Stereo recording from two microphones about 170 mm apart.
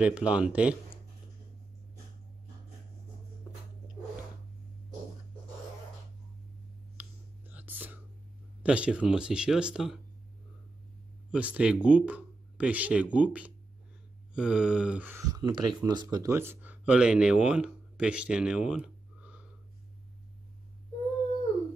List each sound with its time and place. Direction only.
0.0 s speech: 5° right (ahead or behind)
7.0 s whispering: 10° right (ahead or behind)
8.6 s speech: 5° right (ahead or behind)
11.3 s speech: 5° right (ahead or behind)